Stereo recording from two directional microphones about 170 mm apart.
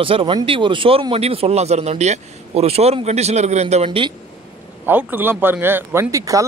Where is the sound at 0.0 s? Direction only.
30° right (ahead or behind).